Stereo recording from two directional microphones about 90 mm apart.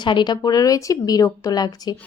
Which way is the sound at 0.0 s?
60° left (ahead or behind).